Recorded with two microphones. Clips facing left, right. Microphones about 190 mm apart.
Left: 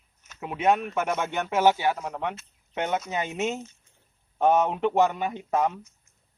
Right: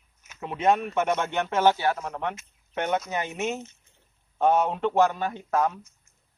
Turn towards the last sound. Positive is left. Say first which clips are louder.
# even
turn(degrees=20)  # may be behind; listen again after turning